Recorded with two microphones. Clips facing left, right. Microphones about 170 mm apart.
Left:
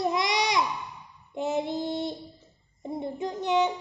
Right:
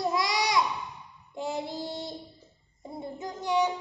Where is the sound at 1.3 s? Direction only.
20° left (ahead or behind).